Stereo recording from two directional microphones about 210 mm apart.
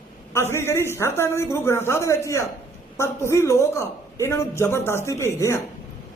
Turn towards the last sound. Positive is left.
turn(degrees=15)  # may be behind; listen again after turning